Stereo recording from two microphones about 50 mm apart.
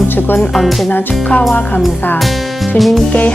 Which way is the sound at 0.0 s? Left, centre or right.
Left.